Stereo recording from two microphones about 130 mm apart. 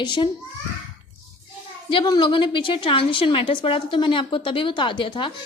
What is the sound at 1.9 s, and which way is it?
A woman's voice, 35° left (ahead or behind).